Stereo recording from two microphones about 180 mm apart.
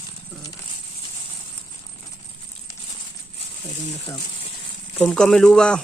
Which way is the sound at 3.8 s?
40° left (ahead or behind).